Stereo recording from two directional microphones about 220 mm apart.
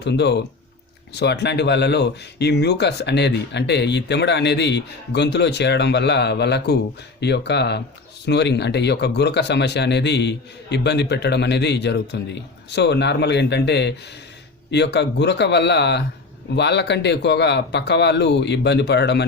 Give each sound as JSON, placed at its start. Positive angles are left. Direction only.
{"t": 0.0, "sound": "speech", "side_deg": 50}